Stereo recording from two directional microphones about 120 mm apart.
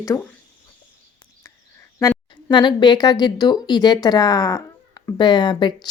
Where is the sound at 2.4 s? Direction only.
40° left (ahead or behind).